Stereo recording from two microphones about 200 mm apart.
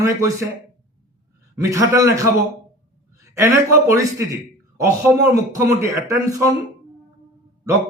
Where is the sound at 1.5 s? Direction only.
15° right (ahead or behind).